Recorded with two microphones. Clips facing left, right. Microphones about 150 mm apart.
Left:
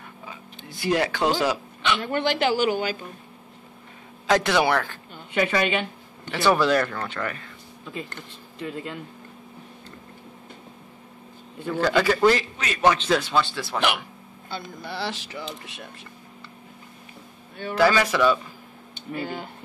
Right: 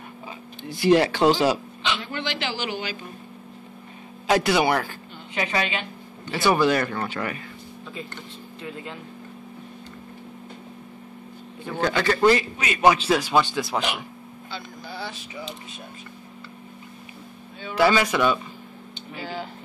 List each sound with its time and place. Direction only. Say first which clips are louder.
0.8 s speech: right 5 dB; 25° right (ahead or behind)
1.8 s a man's voice: left 4 dB; 60° left (ahead or behind)
4.3 s a man's voice: even; 5° right (ahead or behind)
5.3 s speech: left 4 dB; 55° left (ahead or behind)
6.4 s speech: even; centre (ahead or behind)
7.2 s a man's voice: right 1 dB; 15° right (ahead or behind)
11.8 s a man's voice: left 1 dB; 5° left (ahead or behind); by 13.7 s 15° right (ahead or behind)
14.5 s speech: left 3 dB; 75° left (ahead or behind)
17.7 s a man's voice: even; 10° right (ahead or behind)
19.1 s speech: left 2 dB; 55° left (ahead or behind)